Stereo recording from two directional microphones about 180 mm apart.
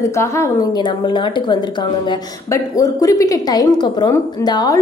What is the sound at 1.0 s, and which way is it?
A woman's voice, 25° left (ahead or behind).